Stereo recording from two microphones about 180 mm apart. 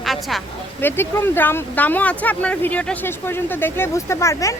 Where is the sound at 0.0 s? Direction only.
Centre (ahead or behind).